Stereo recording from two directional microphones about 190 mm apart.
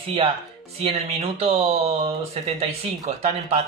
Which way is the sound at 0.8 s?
30° right (ahead or behind).